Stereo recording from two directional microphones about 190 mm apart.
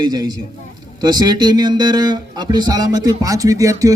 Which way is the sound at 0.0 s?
20° right (ahead or behind).